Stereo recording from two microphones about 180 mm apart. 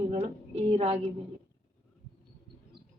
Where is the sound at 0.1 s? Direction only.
35° right (ahead or behind).